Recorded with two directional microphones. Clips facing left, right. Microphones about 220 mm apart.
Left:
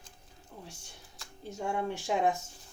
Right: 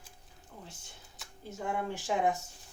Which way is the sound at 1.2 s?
Centre (ahead or behind).